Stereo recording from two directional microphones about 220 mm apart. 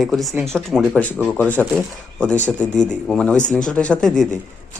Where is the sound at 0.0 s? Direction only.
Centre (ahead or behind).